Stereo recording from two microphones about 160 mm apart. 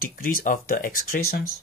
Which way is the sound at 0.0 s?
65° left (ahead or behind).